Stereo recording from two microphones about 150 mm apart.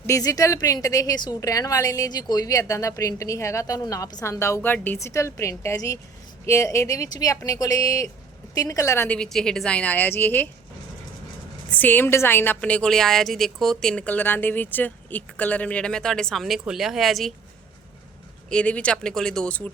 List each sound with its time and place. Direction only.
0.0 s a woman's voice: 20° left (ahead or behind)
9.0 s a woman's voice: 5° left (ahead or behind)
11.7 s a woman's voice: 10° left (ahead or behind)
18.5 s a woman's voice: 10° left (ahead or behind)